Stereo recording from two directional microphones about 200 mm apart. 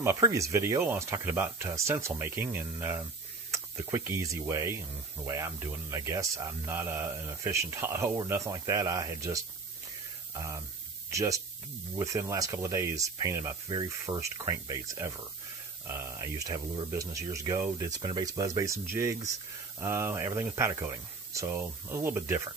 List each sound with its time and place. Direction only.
0.0 s speech: 15° right (ahead or behind)